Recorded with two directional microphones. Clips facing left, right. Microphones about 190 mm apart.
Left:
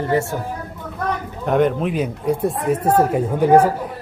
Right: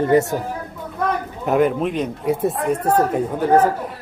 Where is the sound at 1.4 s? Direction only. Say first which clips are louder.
Even; 5° right (ahead or behind).